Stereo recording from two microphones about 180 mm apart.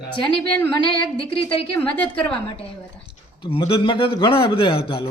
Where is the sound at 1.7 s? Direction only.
5° left (ahead or behind).